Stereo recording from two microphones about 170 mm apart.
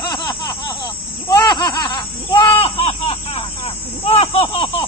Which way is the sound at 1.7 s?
25° left (ahead or behind).